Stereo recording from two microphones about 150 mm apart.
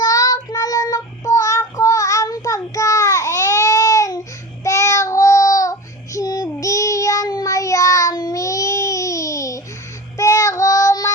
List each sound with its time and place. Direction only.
0.0 s child singing: 25° left (ahead or behind)